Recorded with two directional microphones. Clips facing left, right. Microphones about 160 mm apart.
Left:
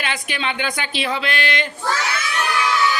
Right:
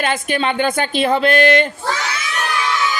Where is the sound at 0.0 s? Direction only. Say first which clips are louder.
Right 7 dB; 45° right (ahead or behind).